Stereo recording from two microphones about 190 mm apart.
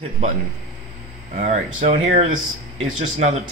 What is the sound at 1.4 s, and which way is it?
Speech, 45° right (ahead or behind).